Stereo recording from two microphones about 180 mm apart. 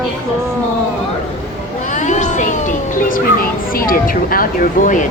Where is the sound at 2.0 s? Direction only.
40° left (ahead or behind).